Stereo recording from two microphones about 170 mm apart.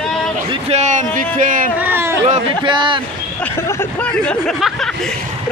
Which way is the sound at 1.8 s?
10° right (ahead or behind).